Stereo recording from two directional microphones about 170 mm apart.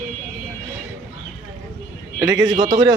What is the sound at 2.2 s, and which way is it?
Speech, 20° right (ahead or behind).